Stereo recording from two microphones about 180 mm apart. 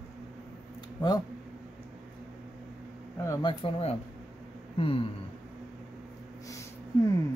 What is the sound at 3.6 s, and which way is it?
Speech, 35° left (ahead or behind).